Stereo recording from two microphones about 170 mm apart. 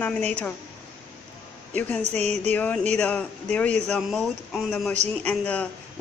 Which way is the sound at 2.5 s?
10° left (ahead or behind).